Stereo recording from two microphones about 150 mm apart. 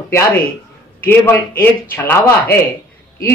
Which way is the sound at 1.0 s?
15° left (ahead or behind).